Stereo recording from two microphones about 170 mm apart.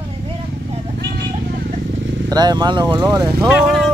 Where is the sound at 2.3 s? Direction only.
25° right (ahead or behind).